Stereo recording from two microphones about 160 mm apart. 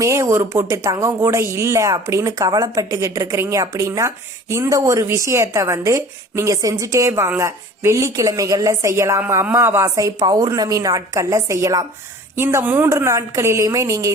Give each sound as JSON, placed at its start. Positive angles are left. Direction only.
{"t": 0.0, "sound": "a woman's voice", "side_deg": -20}